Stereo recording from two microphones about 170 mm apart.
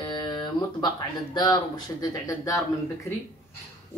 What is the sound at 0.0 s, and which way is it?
Music, 25° left (ahead or behind).